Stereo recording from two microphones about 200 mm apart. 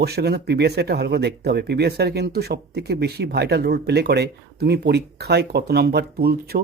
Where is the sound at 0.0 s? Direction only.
55° right (ahead or behind).